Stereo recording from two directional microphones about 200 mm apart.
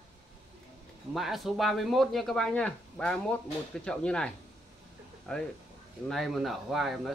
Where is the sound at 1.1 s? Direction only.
Centre (ahead or behind).